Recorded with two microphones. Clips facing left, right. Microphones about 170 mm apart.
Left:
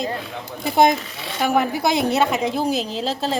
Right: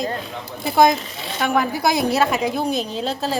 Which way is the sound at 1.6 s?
25° left (ahead or behind).